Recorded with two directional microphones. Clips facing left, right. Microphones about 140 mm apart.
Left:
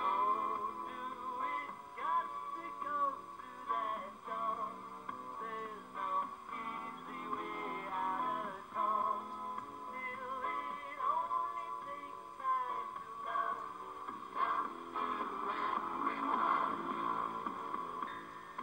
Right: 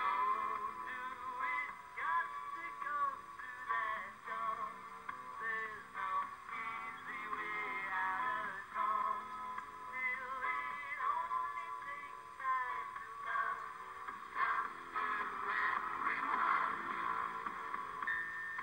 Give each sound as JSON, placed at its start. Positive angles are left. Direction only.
{"t": 0.0, "sound": "music", "side_deg": 20}
{"t": 12.4, "sound": "music", "side_deg": 15}
{"t": 14.3, "sound": "a sound", "side_deg": 20}